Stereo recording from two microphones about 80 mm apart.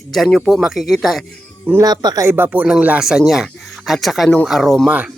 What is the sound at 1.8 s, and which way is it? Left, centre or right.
Speech, right.